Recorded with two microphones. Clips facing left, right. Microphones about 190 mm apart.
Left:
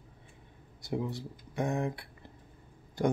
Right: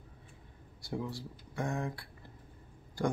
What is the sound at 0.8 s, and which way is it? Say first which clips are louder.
Speech: left 4 dB; 20° left (ahead or behind).